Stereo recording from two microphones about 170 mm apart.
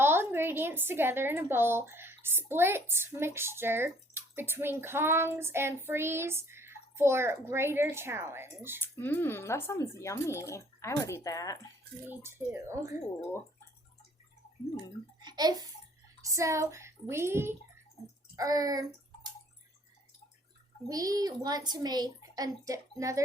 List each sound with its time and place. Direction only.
0.0 s a woman's voice: 15° right (ahead or behind)
8.8 s speech: 10° left (ahead or behind)
12.0 s speech: 15° right (ahead or behind)
15.2 s a child's voice: 25° right (ahead or behind)
20.8 s speech: 20° right (ahead or behind)